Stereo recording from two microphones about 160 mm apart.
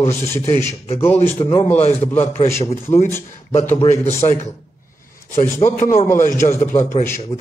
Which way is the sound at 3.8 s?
40° left (ahead or behind).